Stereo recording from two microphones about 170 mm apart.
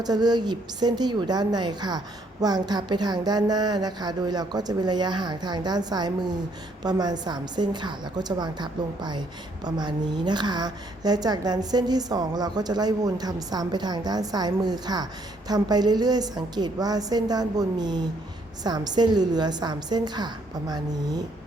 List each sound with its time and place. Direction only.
0.0 s a woman's voice: 25° right (ahead or behind)